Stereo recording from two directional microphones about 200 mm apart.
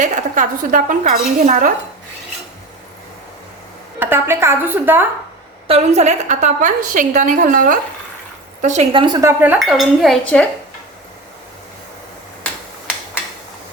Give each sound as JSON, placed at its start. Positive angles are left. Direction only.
{"t": 0.0, "sound": "speech", "side_deg": -40}
{"t": 4.0, "sound": "a woman's voice", "side_deg": -10}
{"t": 5.6, "sound": "a woman's voice", "side_deg": -30}
{"t": 9.2, "sound": "a woman's voice", "side_deg": -10}